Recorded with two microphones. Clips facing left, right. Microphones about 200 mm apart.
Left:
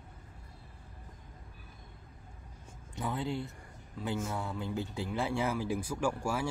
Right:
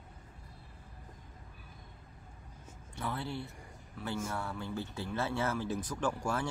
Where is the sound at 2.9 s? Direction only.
15° left (ahead or behind).